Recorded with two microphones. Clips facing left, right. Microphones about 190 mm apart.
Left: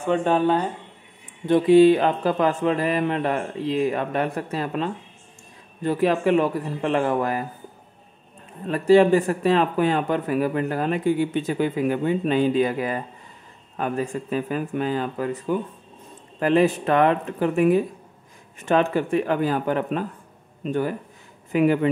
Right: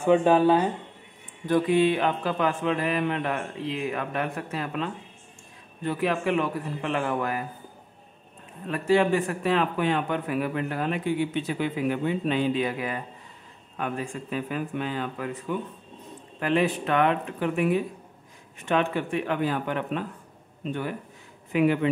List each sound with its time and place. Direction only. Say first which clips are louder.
0.0 s speech: right 1 dB; 10° right (ahead or behind)
1.4 s speech: left 7 dB; 30° left (ahead or behind)
8.6 s speech: left 7 dB; 35° left (ahead or behind)